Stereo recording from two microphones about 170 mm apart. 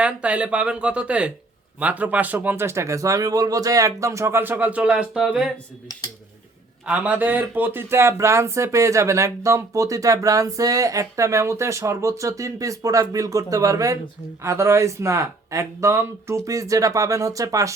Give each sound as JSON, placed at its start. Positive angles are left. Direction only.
{"t": 0.0, "sound": "a man's voice", "side_deg": -5}
{"t": 5.9, "sound": "speech", "side_deg": 20}
{"t": 6.8, "sound": "a man's voice", "side_deg": -10}